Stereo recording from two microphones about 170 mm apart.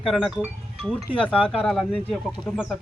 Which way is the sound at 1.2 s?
5° left (ahead or behind).